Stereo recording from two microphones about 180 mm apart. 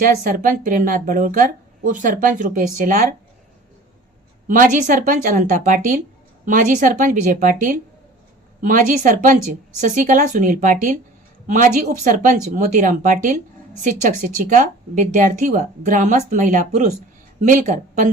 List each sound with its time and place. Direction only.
0.0 s speech: 50° right (ahead or behind)
4.4 s speech: 45° right (ahead or behind)